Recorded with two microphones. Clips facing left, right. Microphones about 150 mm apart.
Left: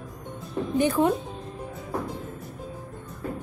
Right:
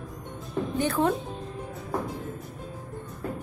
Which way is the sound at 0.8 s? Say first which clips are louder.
Left 3 dB; 15° left (ahead or behind).